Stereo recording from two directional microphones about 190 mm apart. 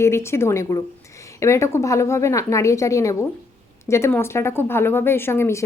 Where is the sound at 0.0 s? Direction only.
15° left (ahead or behind).